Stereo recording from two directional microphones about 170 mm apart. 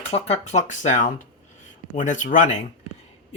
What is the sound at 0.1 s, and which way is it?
Speech, 40° left (ahead or behind).